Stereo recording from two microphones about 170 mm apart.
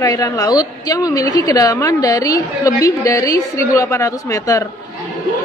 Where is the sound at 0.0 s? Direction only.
20° left (ahead or behind).